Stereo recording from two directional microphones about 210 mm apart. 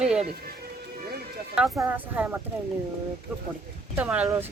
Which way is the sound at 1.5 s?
5° right (ahead or behind).